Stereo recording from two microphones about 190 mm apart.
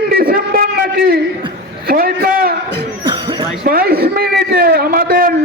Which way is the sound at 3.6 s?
50° right (ahead or behind).